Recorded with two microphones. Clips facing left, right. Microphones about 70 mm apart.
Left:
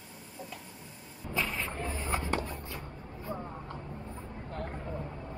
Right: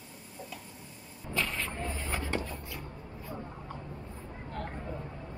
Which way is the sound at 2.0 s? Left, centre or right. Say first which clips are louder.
Left 3 dB; left.